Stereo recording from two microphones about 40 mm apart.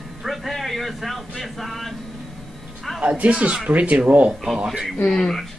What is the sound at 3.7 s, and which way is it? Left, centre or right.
Speech, right.